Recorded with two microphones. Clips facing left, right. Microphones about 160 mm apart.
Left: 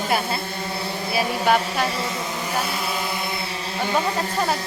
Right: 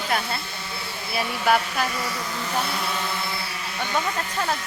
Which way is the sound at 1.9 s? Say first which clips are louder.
Left 3 dB; 25° left (ahead or behind).